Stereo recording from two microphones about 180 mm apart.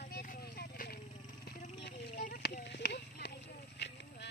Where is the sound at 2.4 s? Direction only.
75° left (ahead or behind).